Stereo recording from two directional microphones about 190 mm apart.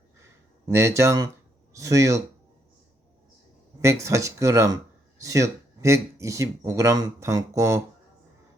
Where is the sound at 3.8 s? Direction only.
15° right (ahead or behind).